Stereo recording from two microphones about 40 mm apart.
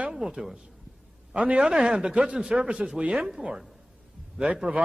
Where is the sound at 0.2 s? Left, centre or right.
Centre.